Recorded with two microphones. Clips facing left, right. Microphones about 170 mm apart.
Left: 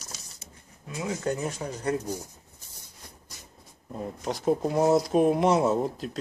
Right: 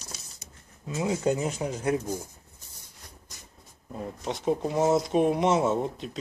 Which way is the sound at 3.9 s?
Centre (ahead or behind).